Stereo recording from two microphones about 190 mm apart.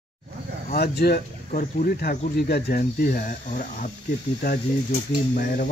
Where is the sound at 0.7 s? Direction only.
55° left (ahead or behind).